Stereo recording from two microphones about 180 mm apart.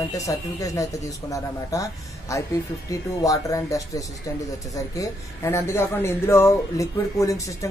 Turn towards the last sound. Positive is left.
turn(degrees=15)  # may be behind; listen again after turning